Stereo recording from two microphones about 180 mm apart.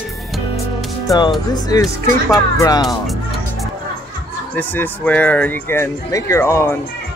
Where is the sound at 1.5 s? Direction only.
20° left (ahead or behind).